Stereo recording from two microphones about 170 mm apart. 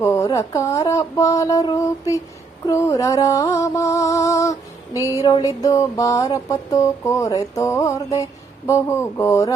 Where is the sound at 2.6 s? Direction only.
20° left (ahead or behind).